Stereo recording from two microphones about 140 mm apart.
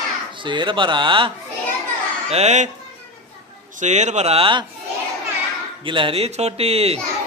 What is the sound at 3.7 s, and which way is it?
Speech, 55° right (ahead or behind).